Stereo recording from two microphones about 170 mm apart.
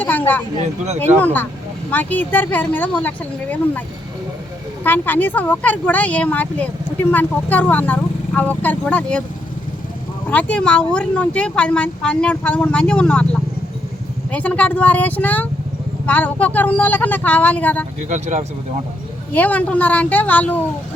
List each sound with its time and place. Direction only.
0.0 s speech: 10° left (ahead or behind)
10.2 s speech: 5° left (ahead or behind)
18.1 s speech: 45° right (ahead or behind)
19.3 s speech: 10° left (ahead or behind)